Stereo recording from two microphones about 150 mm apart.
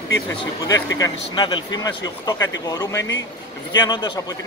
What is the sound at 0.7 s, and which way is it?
Speech, 25° left (ahead or behind).